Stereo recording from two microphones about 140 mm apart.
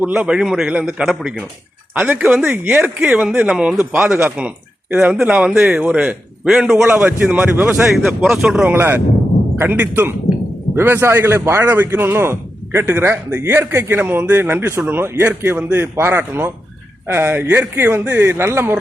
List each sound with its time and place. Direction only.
0.0 s a man's voice: 10° right (ahead or behind)
7.9 s a man's voice: centre (ahead or behind)